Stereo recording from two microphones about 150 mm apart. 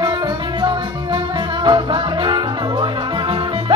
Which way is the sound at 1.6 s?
30° right (ahead or behind).